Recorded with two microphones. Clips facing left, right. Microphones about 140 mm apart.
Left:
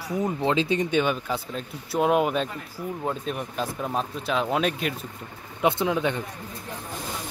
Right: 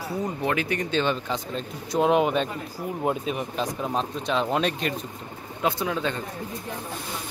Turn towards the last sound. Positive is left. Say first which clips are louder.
# left 3 dB
turn(degrees=15)  # may be behind; listen again after turning